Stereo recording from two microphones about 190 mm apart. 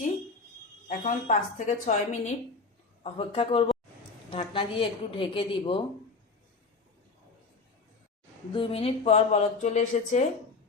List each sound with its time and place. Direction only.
0.9 s a woman's voice: 40° left (ahead or behind)
8.5 s speech: 30° left (ahead or behind)